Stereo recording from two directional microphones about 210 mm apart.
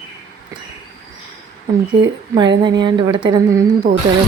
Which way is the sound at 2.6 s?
20° right (ahead or behind).